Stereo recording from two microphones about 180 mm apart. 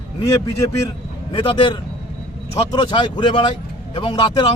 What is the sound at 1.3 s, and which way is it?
A man's voice, 30° left (ahead or behind).